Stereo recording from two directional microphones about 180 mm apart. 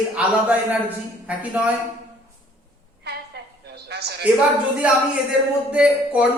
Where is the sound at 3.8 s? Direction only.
65° right (ahead or behind).